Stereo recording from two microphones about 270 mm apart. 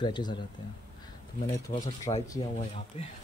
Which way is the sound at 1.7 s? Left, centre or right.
Left.